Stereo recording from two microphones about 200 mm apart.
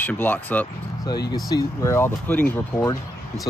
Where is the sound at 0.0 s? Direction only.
10° left (ahead or behind).